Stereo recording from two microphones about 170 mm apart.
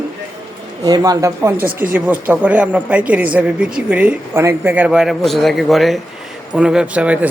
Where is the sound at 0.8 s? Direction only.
20° right (ahead or behind).